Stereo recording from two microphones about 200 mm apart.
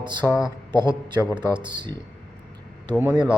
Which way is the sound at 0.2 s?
Centre (ahead or behind).